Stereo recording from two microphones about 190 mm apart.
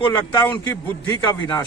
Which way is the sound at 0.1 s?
20° left (ahead or behind).